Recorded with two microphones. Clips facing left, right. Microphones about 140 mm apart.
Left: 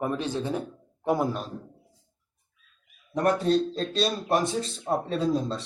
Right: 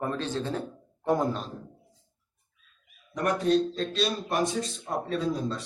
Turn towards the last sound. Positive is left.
turn(degrees=30)  # may be behind; listen again after turning